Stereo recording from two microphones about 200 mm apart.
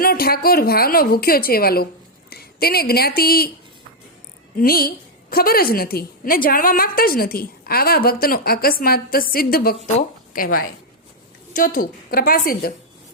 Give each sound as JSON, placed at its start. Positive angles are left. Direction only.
{"t": 0.0, "sound": "a woman's voice", "side_deg": 50}
{"t": 4.5, "sound": "a woman's voice", "side_deg": 45}